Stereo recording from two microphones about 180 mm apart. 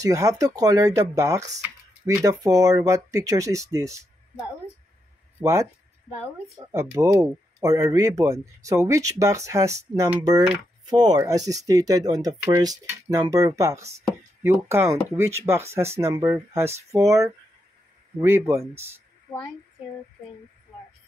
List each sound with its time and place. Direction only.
0.0 s speech: 15° right (ahead or behind)
5.4 s speech: 15° right (ahead or behind)